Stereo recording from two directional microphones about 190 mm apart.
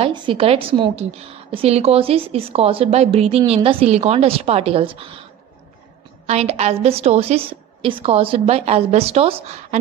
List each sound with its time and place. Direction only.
0.0 s a woman's voice: 25° right (ahead or behind)
6.2 s a woman's voice: 35° right (ahead or behind)